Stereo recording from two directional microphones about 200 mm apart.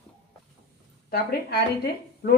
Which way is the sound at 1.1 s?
50° left (ahead or behind).